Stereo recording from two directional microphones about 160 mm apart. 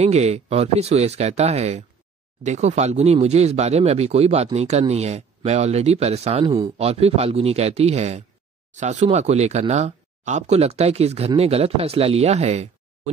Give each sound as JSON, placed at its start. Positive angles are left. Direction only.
{"t": 0.0, "sound": "speech", "side_deg": -40}
{"t": 6.4, "sound": "speech", "side_deg": -25}
{"t": 6.8, "sound": "speech", "side_deg": -40}